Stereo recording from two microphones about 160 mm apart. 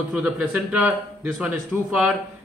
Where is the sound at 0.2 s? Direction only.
10° right (ahead or behind).